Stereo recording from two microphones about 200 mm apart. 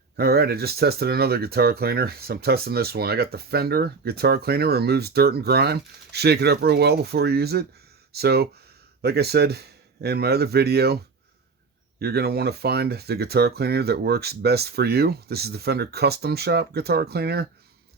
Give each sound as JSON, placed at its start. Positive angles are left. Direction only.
{"t": 0.2, "sound": "speech", "side_deg": -50}